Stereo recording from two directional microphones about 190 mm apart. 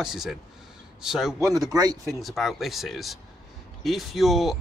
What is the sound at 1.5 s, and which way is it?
Speech, 20° right (ahead or behind).